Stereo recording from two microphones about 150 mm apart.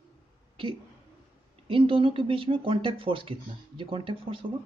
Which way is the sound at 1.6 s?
35° right (ahead or behind).